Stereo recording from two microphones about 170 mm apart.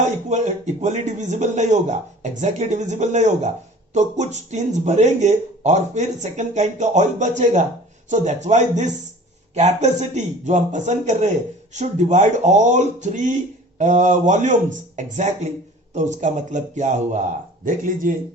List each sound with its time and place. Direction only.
0.3 s speech: 45° right (ahead or behind)